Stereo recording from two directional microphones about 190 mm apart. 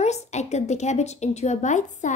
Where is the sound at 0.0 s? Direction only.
35° left (ahead or behind).